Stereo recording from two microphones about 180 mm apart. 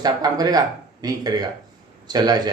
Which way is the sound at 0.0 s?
20° right (ahead or behind).